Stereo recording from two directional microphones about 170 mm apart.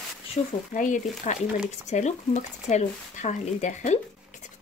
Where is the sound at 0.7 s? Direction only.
50° left (ahead or behind).